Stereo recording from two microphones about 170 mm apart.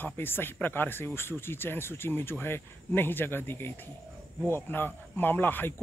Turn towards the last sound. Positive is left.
turn(degrees=10)  # may be behind; listen again after turning